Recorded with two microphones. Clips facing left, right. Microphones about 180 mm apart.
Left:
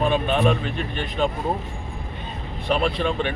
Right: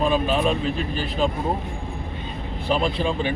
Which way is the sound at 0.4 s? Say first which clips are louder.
Left 1 dB; 35° right (ahead or behind).